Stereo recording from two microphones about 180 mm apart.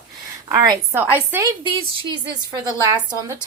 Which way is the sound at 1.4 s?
25° right (ahead or behind).